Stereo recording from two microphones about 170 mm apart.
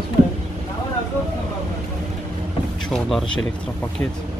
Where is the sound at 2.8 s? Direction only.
Centre (ahead or behind).